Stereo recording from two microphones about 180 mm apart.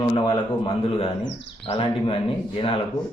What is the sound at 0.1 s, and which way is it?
Speech, 30° left (ahead or behind).